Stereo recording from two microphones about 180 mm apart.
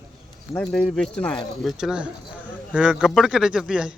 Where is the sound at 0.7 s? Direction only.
5° left (ahead or behind).